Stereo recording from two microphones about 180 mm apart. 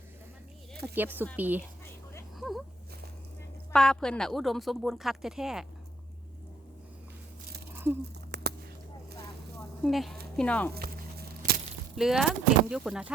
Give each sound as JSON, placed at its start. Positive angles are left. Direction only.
{"t": 0.9, "sound": "speech", "side_deg": -10}
{"t": 3.7, "sound": "speech", "side_deg": 5}
{"t": 8.3, "sound": "a sound", "side_deg": -65}
{"t": 9.8, "sound": "speech", "side_deg": 0}
{"t": 10.8, "sound": "a sound", "side_deg": -60}
{"t": 11.9, "sound": "speech", "side_deg": 0}